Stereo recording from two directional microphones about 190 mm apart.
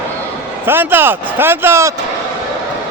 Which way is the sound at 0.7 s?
10° right (ahead or behind).